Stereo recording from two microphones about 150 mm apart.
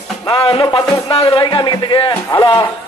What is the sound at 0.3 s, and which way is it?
Speech, 40° left (ahead or behind).